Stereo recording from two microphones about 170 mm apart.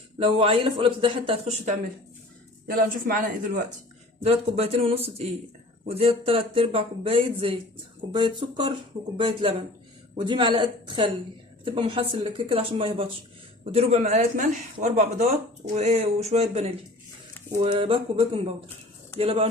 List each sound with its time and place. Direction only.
0.2 s speech: 35° right (ahead or behind)
2.7 s speech: 55° right (ahead or behind)
4.2 s speech: 40° right (ahead or behind)
17.6 s speech: 30° right (ahead or behind)